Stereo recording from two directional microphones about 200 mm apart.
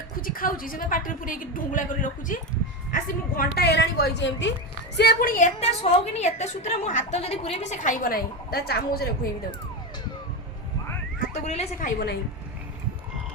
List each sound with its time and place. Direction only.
0.2 s a woman's voice: 45° left (ahead or behind); by 4.5 s 65° left (ahead or behind)
4.9 s a woman's voice: 50° left (ahead or behind)
11.4 s a woman's voice: 30° left (ahead or behind)